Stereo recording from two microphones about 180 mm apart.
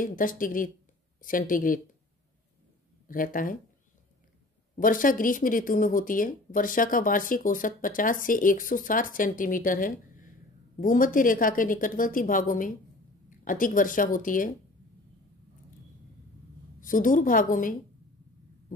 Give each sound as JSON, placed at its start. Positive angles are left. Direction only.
{"t": 0.0, "sound": "speech", "side_deg": 50}
{"t": 3.1, "sound": "speech", "side_deg": 50}
{"t": 4.7, "sound": "speech", "side_deg": 50}
{"t": 16.8, "sound": "speech", "side_deg": 50}